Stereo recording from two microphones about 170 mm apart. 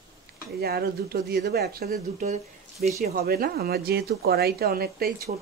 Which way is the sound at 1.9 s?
45° right (ahead or behind).